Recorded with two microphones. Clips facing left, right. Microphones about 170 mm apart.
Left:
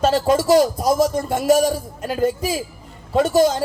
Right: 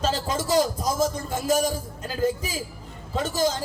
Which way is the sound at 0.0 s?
65° left (ahead or behind).